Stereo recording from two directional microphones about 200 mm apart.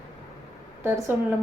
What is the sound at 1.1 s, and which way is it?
Speech, 5° right (ahead or behind).